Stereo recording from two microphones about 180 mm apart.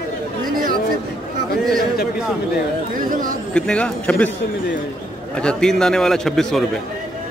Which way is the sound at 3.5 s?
5° left (ahead or behind).